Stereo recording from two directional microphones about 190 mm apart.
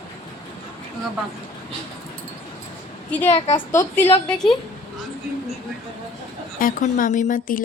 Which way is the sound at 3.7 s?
10° left (ahead or behind).